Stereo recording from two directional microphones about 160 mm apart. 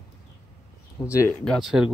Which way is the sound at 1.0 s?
10° left (ahead or behind).